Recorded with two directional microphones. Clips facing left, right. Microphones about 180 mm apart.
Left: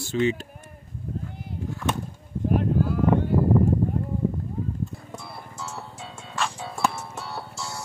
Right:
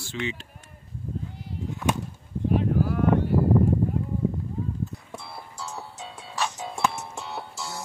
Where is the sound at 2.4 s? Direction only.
50° left (ahead or behind).